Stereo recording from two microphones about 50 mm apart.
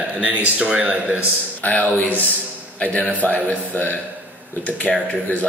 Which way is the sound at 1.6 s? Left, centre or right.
Left.